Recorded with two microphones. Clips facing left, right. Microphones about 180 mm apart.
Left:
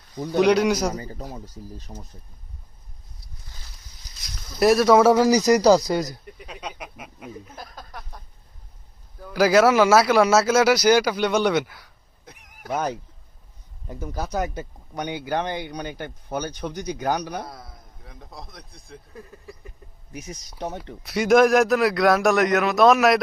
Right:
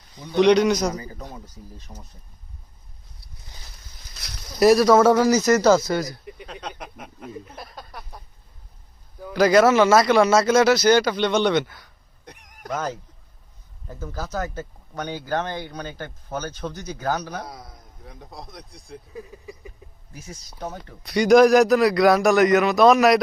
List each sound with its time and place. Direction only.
0.3 s speech: 5° left (ahead or behind)
4.6 s a man's voice: centre (ahead or behind); by 6.1 s 15° left (ahead or behind)
6.2 s speech: centre (ahead or behind)
9.3 s speech: 5° left (ahead or behind)
13.8 s speech: 15° left (ahead or behind)
17.4 s a man's voice: centre (ahead or behind)
19.8 s a sound: centre (ahead or behind)
20.1 s speech: 20° left (ahead or behind)
21.0 s a man's voice: centre (ahead or behind)